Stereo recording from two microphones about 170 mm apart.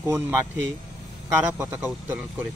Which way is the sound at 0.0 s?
15° right (ahead or behind).